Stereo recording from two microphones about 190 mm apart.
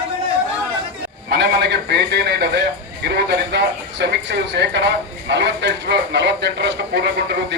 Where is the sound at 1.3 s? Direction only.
60° right (ahead or behind).